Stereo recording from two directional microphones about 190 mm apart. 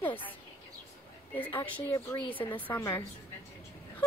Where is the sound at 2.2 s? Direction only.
25° left (ahead or behind).